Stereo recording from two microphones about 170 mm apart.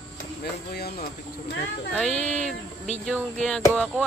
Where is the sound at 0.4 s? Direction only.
65° left (ahead or behind).